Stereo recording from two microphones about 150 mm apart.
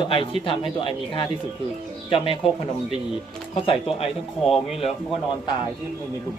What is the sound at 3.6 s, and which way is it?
Speech, 40° left (ahead or behind).